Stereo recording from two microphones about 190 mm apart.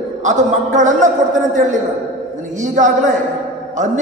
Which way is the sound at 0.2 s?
40° right (ahead or behind).